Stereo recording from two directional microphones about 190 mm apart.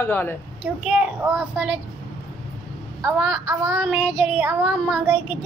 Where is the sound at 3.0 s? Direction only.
5° right (ahead or behind).